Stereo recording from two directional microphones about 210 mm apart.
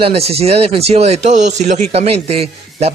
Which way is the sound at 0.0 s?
30° right (ahead or behind).